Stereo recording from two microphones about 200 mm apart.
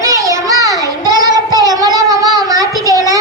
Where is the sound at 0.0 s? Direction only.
15° right (ahead or behind).